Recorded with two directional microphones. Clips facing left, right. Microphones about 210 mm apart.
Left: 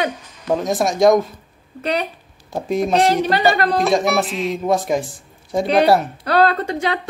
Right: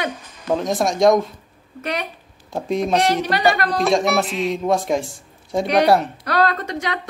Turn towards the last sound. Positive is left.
turn(degrees=30)  # may be behind; listen again after turning